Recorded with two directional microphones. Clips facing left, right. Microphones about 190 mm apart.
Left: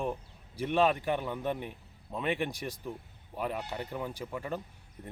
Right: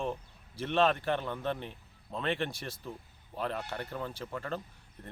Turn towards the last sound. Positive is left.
turn(degrees=10)  # may be behind; listen again after turning